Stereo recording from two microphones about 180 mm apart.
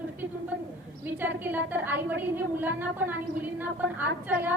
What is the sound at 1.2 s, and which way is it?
A woman's voice, 10° right (ahead or behind).